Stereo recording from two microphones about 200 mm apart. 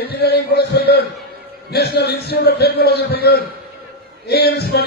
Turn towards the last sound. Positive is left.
turn(degrees=55)  # may be behind; listen again after turning